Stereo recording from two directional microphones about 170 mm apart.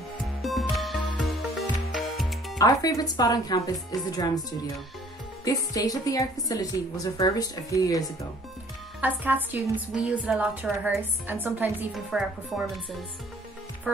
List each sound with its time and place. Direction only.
0.4 s music: centre (ahead or behind)
2.6 s a woman's voice: 20° left (ahead or behind)
9.0 s a woman's voice: 10° right (ahead or behind)